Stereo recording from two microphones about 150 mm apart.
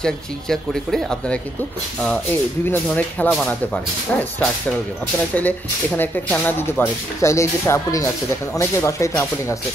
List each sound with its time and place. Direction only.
0.0 s speech: 5° left (ahead or behind)
2.7 s speech: 10° left (ahead or behind)